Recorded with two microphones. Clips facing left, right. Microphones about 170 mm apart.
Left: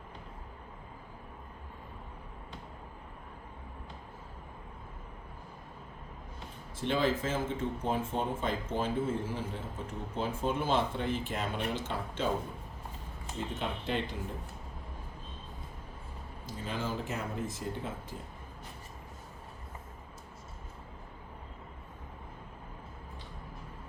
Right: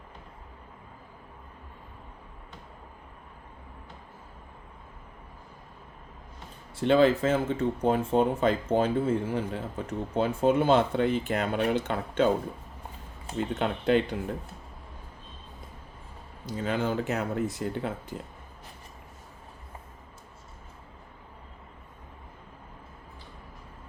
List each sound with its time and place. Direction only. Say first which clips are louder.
6.7 s speech: right 9 dB; 70° right (ahead or behind)
13.5 s speech: right 11 dB; 70° right (ahead or behind)
16.5 s speech: right 8 dB; 75° right (ahead or behind)